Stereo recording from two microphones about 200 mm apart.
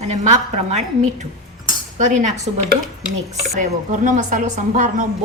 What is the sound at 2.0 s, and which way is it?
Speech, 40° right (ahead or behind).